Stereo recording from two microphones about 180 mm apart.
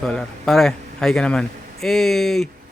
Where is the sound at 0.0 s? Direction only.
Centre (ahead or behind).